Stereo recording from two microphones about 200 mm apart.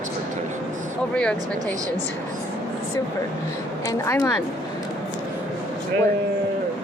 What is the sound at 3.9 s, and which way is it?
Speech, 15° left (ahead or behind).